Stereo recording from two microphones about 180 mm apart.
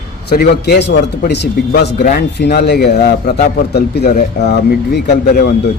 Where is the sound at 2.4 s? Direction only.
65° left (ahead or behind).